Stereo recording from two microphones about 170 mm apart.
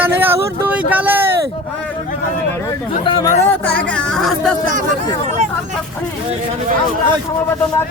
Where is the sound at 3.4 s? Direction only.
10° left (ahead or behind).